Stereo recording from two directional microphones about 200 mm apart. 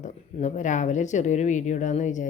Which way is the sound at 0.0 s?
35° left (ahead or behind).